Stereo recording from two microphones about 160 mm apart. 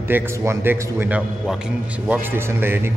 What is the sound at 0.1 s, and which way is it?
A man's voice, 15° right (ahead or behind).